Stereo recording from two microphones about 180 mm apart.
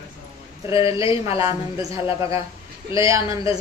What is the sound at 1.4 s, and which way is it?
Speech, 20° right (ahead or behind).